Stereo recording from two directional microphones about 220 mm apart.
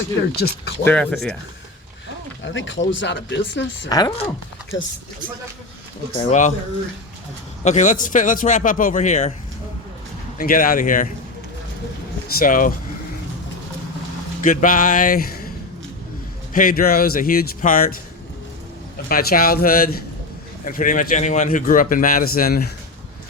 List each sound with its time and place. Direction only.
0.3 s speech: 45° left (ahead or behind)
0.9 s speech: 5° left (ahead or behind)
2.4 s speech: 55° left (ahead or behind)
3.8 s speech: 15° left (ahead or behind)
6.1 s a man's voice: 35° left (ahead or behind)
7.6 s a man's voice: 35° left (ahead or behind)
10.3 s a man's voice: 40° left (ahead or behind)
12.3 s a man's voice: 40° left (ahead or behind)
14.4 s a man's voice: 35° left (ahead or behind)
16.5 s a man's voice: 40° left (ahead or behind)
19.0 s a man's voice: 40° left (ahead or behind)